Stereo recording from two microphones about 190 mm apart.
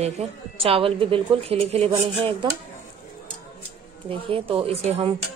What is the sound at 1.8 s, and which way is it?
Speech, 20° right (ahead or behind).